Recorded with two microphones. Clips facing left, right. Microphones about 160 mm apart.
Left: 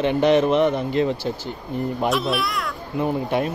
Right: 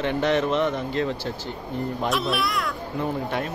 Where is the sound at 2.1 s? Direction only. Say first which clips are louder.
Left 2 dB; centre (ahead or behind).